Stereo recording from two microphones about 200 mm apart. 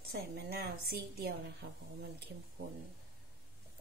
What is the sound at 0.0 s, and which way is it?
A woman's voice, 50° right (ahead or behind).